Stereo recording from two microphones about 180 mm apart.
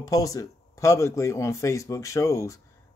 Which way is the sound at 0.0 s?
20° left (ahead or behind).